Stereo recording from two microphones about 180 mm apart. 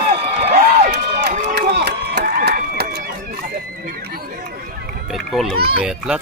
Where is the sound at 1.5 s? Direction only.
65° right (ahead or behind).